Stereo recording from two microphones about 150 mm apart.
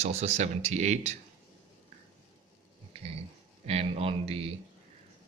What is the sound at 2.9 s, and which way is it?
Dog, 40° right (ahead or behind).